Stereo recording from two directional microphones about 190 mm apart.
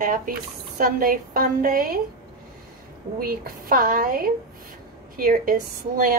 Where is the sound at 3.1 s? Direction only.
50° right (ahead or behind).